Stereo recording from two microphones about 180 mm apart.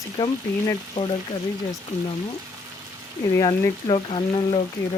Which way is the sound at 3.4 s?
25° left (ahead or behind).